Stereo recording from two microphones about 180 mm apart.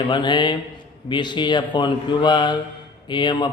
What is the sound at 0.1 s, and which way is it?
Speech, 25° left (ahead or behind).